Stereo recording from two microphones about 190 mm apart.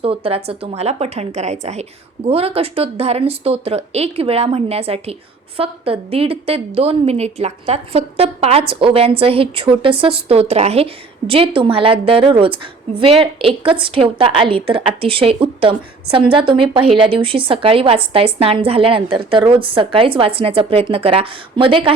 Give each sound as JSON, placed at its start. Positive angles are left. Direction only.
{"t": 0.0, "sound": "a woman's voice", "side_deg": -30}